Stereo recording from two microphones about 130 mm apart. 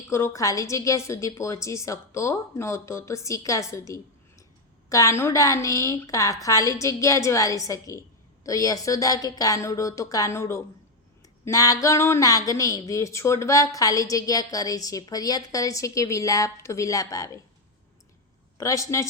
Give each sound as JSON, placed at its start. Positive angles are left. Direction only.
{"t": 0.1, "sound": "speech", "side_deg": 25}
{"t": 18.5, "sound": "speech", "side_deg": 25}